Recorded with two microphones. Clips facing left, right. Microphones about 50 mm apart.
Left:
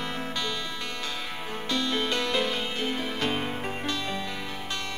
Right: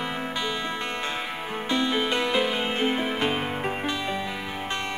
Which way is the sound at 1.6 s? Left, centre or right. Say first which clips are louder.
Right 3 dB; right.